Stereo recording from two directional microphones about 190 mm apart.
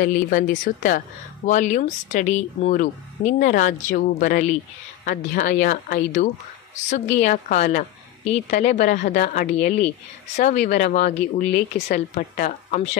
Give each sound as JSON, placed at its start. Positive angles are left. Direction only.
{"t": 0.0, "sound": "speech", "side_deg": 45}